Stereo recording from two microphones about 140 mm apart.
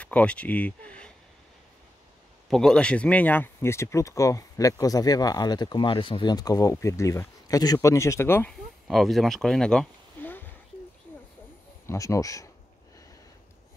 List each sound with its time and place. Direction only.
0.0 s speech: 10° left (ahead or behind)
2.5 s speech: 5° left (ahead or behind)
8.5 s speech: centre (ahead or behind)
11.8 s speech: 20° left (ahead or behind)